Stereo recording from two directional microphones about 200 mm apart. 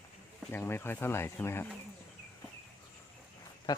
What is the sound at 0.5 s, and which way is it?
Speech, 10° left (ahead or behind).